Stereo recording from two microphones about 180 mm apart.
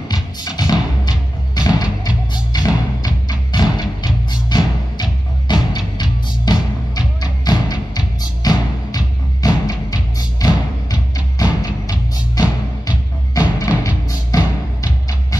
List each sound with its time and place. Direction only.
0.1 s music: 20° left (ahead or behind)